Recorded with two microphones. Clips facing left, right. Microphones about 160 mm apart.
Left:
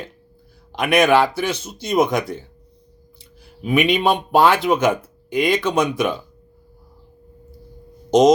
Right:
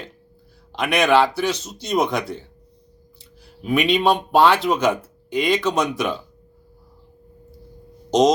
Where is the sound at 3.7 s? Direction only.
5° left (ahead or behind).